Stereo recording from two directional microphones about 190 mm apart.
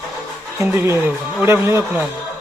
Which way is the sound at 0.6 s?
15° right (ahead or behind).